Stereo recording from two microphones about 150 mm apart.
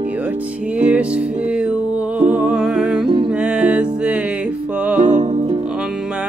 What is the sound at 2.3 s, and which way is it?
Humming, 5° right (ahead or behind).